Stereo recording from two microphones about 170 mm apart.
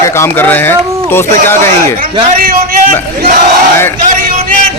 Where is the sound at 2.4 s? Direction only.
60° right (ahead or behind).